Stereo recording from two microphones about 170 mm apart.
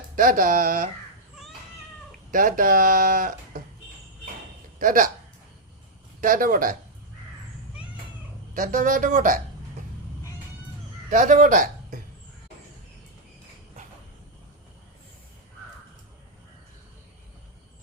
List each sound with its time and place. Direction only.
0.2 s speech: 55° right (ahead or behind)
2.3 s speech: 55° right (ahead or behind)
4.8 s speech: 55° right (ahead or behind)
6.1 s speech: 55° right (ahead or behind)
8.5 s speech: 50° right (ahead or behind)
11.1 s speech: 50° right (ahead or behind)